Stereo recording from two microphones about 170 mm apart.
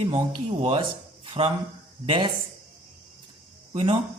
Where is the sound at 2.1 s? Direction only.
30° right (ahead or behind).